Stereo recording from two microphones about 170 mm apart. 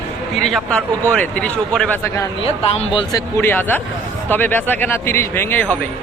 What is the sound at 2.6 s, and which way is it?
A man's voice, 35° left (ahead or behind).